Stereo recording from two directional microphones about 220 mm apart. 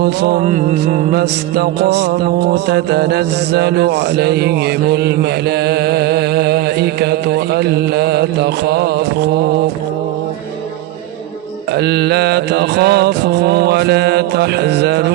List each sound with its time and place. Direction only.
0.0 s mantra: 45° right (ahead or behind)
11.8 s mantra: 50° right (ahead or behind)